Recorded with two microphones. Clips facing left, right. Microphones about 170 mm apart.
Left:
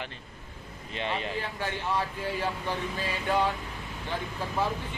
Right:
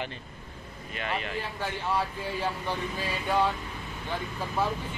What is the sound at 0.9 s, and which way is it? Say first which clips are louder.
Speech: left 1 dB; 30° left (ahead or behind).